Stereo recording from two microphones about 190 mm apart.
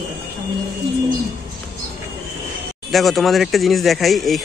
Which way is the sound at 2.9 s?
Centre (ahead or behind).